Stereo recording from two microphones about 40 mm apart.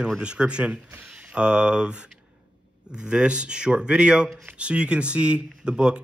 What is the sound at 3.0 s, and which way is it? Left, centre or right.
Speech, right.